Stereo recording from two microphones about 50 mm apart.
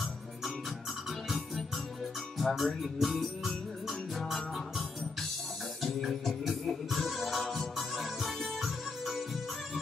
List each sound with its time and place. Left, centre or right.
2.3 s music: centre